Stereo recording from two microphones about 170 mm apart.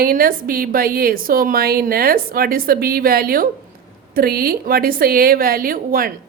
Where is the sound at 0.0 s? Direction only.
55° right (ahead or behind).